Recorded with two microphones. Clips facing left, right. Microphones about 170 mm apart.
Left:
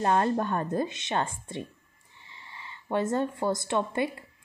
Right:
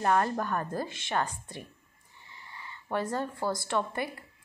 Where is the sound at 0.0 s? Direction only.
25° left (ahead or behind).